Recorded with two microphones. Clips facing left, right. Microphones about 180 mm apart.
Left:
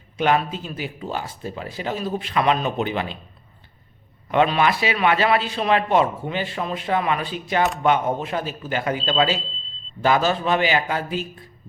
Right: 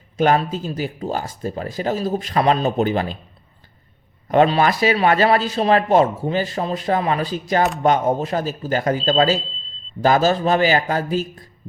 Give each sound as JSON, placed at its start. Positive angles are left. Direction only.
{"t": 0.2, "sound": "speech", "side_deg": -40}
{"t": 4.3, "sound": "speech", "side_deg": -35}